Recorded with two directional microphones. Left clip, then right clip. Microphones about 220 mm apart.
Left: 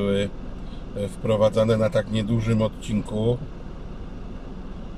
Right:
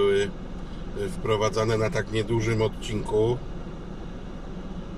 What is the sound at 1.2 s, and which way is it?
Speech, 15° left (ahead or behind).